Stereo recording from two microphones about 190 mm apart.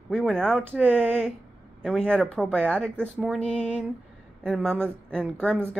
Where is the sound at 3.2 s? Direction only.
5° left (ahead or behind).